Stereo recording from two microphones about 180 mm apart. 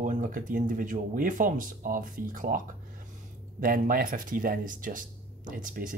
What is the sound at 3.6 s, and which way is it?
Speech, 50° right (ahead or behind).